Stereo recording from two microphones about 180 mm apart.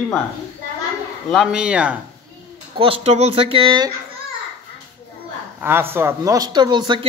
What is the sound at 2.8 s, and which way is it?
Speech, 35° right (ahead or behind).